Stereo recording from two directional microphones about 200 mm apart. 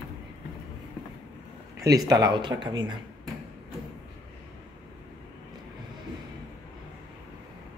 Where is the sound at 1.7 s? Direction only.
15° right (ahead or behind).